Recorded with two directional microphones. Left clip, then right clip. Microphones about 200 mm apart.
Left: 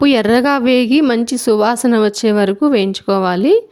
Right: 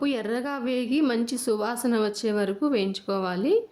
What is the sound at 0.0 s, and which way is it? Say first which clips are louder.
A woman's voice: left 16 dB; 45° left (ahead or behind).